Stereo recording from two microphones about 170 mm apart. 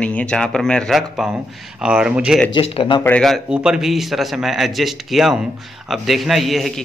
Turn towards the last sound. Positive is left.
turn(degrees=0)  # may be behind; listen again after turning